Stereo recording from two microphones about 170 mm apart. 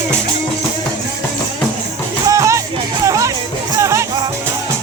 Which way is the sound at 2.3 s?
20° right (ahead or behind).